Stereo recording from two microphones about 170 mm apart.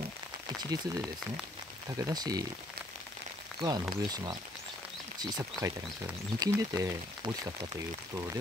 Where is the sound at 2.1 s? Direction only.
20° right (ahead or behind).